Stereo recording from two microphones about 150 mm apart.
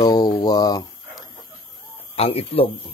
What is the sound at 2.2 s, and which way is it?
Speech, 40° left (ahead or behind).